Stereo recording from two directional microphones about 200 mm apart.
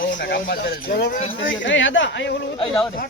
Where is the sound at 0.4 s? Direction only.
50° left (ahead or behind).